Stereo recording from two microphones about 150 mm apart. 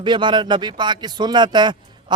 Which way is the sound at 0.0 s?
30° right (ahead or behind).